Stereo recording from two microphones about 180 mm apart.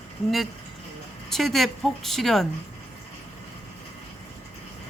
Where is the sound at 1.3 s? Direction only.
Centre (ahead or behind).